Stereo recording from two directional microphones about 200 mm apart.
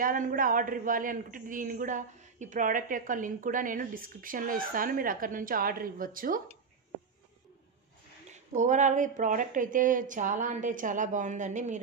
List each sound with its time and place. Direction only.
0.0 s a man's voice: 45° right (ahead or behind)
8.3 s speech: 35° right (ahead or behind)